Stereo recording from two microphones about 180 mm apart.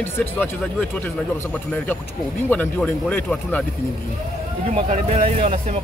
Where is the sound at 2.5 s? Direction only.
10° left (ahead or behind).